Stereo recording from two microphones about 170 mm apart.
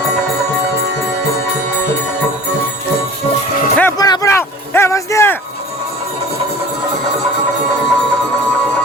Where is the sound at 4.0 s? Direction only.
20° left (ahead or behind).